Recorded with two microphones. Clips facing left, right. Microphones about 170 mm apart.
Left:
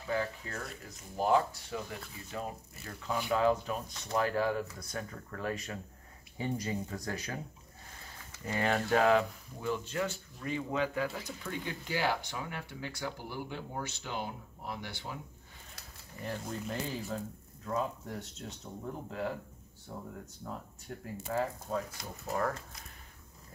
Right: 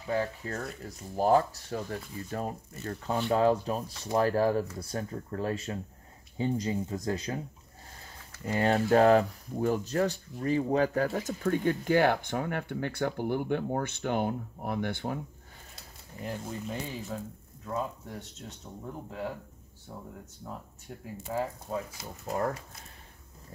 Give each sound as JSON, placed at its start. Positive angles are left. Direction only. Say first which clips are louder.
{"t": 0.1, "sound": "speech", "louder": "right 4 dB", "side_deg": -35}
{"t": 8.5, "sound": "speech", "louder": "right 6 dB", "side_deg": -30}
{"t": 15.7, "sound": "a sound", "louder": "right 2 dB", "side_deg": -20}
{"t": 16.4, "sound": "speech", "louder": "right 1 dB", "side_deg": 0}